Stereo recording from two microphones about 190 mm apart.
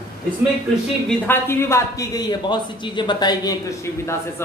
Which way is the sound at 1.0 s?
10° left (ahead or behind).